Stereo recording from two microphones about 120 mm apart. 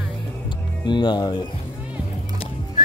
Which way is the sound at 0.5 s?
40° left (ahead or behind).